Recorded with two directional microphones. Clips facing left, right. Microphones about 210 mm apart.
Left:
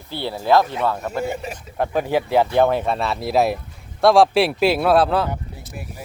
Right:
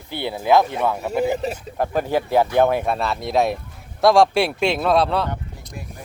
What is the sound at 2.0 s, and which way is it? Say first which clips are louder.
Speech: left 1 dB; 10° left (ahead or behind).